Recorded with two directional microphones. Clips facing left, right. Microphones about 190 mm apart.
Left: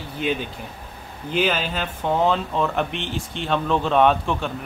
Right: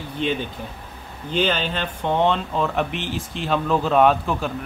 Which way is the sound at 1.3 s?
5° left (ahead or behind).